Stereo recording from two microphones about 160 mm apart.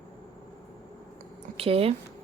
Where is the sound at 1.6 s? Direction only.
35° right (ahead or behind).